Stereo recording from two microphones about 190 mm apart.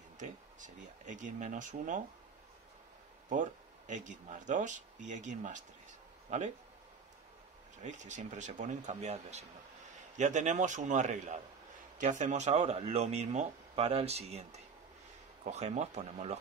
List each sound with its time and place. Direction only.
0.2 s speech: 40° right (ahead or behind)
3.3 s speech: 40° right (ahead or behind)
7.8 s speech: 40° right (ahead or behind)